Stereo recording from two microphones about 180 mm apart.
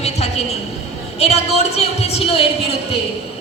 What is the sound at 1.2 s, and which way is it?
A woman's voice, 35° left (ahead or behind).